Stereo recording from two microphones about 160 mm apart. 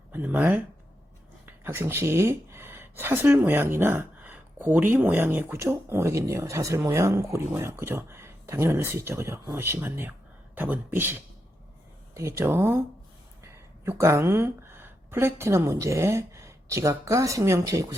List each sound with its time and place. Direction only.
0.1 s speech: 10° right (ahead or behind)
13.8 s a woman's voice: 15° right (ahead or behind)